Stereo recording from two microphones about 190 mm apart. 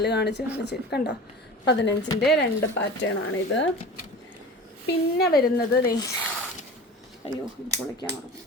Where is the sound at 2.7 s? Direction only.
85° left.